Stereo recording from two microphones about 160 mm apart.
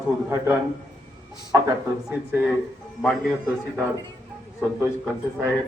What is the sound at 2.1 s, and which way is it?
Speech, 10° right (ahead or behind).